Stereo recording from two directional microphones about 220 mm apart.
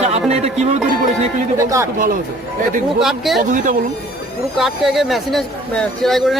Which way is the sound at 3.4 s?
35° right (ahead or behind).